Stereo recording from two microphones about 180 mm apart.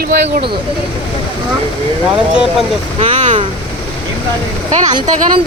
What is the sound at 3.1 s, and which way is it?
Speech, 45° right (ahead or behind).